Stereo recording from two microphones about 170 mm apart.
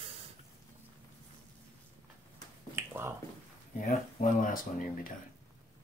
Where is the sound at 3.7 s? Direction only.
50° left (ahead or behind).